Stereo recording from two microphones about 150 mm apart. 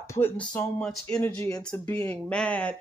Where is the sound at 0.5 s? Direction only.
5° left (ahead or behind).